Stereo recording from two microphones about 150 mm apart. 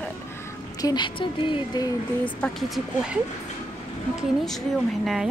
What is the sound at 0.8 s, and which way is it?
Speech, 30° left (ahead or behind).